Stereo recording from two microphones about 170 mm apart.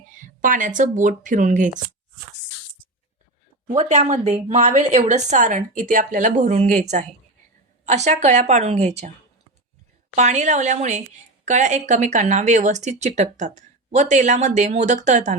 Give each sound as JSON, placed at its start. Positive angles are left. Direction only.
{"t": 0.2, "sound": "speech", "side_deg": -50}
{"t": 3.8, "sound": "speech", "side_deg": -45}
{"t": 10.2, "sound": "speech", "side_deg": -45}